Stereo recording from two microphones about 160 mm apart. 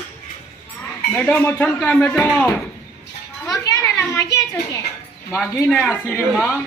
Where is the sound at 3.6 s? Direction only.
20° left (ahead or behind).